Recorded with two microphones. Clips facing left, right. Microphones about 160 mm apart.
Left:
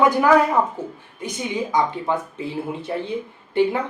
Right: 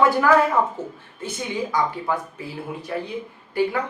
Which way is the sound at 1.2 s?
20° left (ahead or behind).